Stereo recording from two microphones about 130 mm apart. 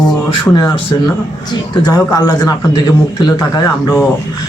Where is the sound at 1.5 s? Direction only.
30° left (ahead or behind).